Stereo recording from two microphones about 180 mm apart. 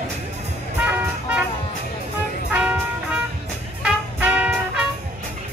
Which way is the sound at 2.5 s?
5° right (ahead or behind).